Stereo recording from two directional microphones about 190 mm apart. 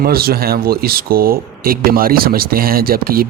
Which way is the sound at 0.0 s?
55° right (ahead or behind).